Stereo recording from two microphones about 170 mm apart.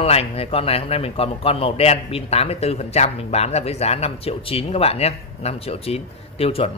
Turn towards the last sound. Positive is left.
turn(degrees=35)  # may be behind; listen again after turning